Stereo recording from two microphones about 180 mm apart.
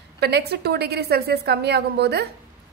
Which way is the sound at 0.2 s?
65° right (ahead or behind).